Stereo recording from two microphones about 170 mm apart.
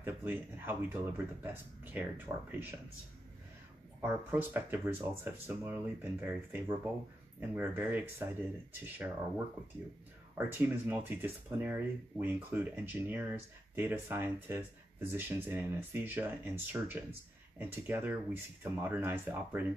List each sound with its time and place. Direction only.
0.0 s speech: 10° right (ahead or behind)
4.0 s speech: 10° right (ahead or behind)
10.3 s speech: 10° right (ahead or behind)